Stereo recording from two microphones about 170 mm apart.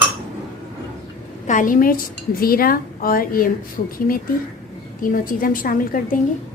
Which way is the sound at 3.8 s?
45° left (ahead or behind).